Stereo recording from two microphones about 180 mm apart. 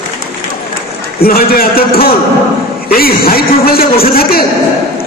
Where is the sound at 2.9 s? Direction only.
55° left (ahead or behind).